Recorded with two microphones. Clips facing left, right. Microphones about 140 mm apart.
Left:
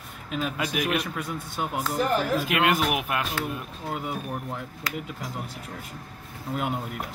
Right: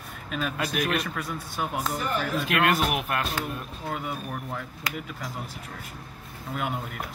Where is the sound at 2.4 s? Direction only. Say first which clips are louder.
Even; 5° left (ahead or behind).